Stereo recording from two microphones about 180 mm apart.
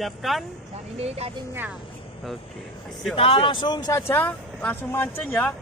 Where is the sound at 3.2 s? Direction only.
30° left (ahead or behind).